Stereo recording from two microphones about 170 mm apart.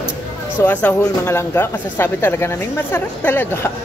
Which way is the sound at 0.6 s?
10° left (ahead or behind).